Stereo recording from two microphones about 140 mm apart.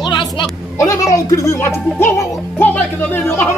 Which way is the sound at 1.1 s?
25° left (ahead or behind).